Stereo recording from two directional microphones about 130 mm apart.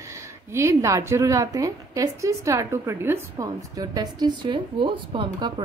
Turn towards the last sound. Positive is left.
turn(degrees=-35)  # may be behind; listen again after turning